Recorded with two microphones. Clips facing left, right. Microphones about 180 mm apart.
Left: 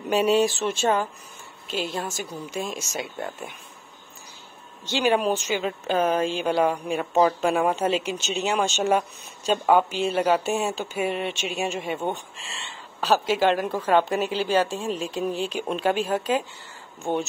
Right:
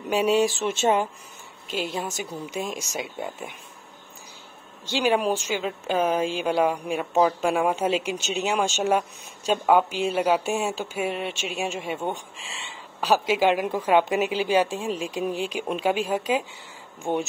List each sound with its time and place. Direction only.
0.1 s speech: 10° right (ahead or behind)
0.7 s speech: 20° right (ahead or behind)
1.7 s speech: 10° right (ahead or behind)
4.8 s speech: 10° right (ahead or behind)